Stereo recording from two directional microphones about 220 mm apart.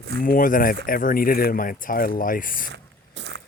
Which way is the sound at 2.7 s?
55° right (ahead or behind).